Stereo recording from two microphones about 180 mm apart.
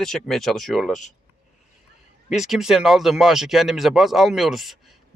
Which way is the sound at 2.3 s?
Centre (ahead or behind).